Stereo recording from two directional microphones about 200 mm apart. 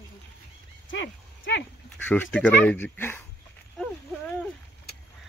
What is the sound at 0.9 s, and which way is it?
Horse, 65° left (ahead or behind).